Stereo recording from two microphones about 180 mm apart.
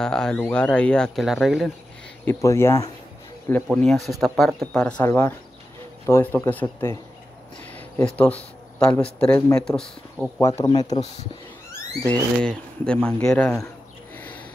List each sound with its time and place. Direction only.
0.0 s speech: 5° left (ahead or behind)
2.2 s speech: 15° left (ahead or behind)
3.6 s speech: centre (ahead or behind)
7.6 s a sound: 5° left (ahead or behind)
9.0 s speech: 5° left (ahead or behind)
10.6 s a man's voice: 20° left (ahead or behind)
12.0 s speech: 5° left (ahead or behind)